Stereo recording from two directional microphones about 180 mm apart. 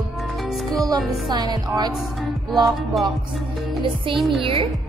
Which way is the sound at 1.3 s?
20° right (ahead or behind).